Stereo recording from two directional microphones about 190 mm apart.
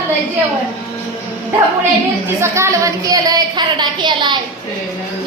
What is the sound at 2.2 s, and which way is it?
A woman's voice, 15° right (ahead or behind).